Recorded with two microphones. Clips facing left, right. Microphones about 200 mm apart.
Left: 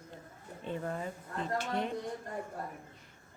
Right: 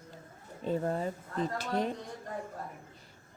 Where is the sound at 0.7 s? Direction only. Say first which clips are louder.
Right 6 dB; 35° right (ahead or behind).